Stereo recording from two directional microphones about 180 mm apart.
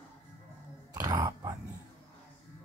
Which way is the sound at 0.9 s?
20° right (ahead or behind).